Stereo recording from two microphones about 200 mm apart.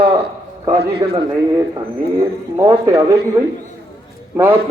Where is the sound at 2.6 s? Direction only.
15° right (ahead or behind).